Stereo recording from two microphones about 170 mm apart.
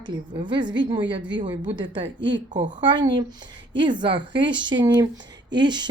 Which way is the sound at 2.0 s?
90° right.